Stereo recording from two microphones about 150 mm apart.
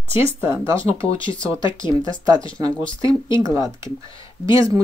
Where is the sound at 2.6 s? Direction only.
25° right (ahead or behind).